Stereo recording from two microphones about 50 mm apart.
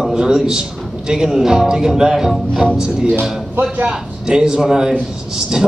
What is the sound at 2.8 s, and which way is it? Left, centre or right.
A man's voice, centre.